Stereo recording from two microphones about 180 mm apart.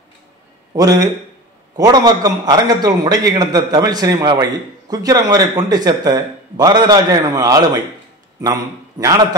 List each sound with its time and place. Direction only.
0.7 s a man's voice: 20° right (ahead or behind)